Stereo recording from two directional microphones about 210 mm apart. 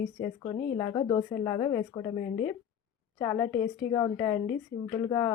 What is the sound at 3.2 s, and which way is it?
A woman's voice, 10° left (ahead or behind).